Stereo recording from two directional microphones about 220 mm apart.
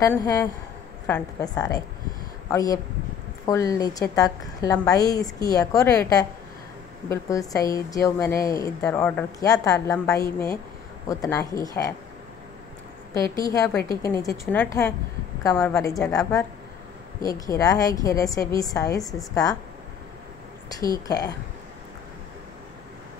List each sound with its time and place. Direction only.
0.0 s a woman's voice: 15° left (ahead or behind)
13.1 s a woman's voice: 15° left (ahead or behind)
17.2 s a woman's voice: 15° left (ahead or behind)
20.8 s a woman's voice: 15° left (ahead or behind)